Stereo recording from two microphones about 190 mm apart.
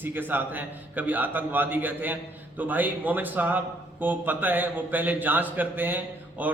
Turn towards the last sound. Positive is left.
turn(degrees=-10)  # may be behind; listen again after turning